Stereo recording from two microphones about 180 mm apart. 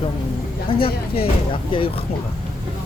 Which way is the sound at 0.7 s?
30° left (ahead or behind).